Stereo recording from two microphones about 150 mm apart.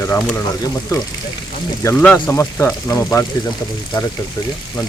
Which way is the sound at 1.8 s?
10° left (ahead or behind).